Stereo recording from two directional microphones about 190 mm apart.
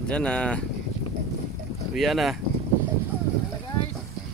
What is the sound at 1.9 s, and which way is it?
Speech, centre (ahead or behind).